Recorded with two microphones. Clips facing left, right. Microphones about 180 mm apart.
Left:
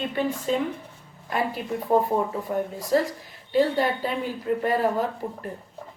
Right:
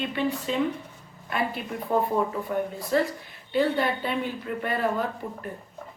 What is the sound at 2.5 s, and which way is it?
Speech, 25° left (ahead or behind).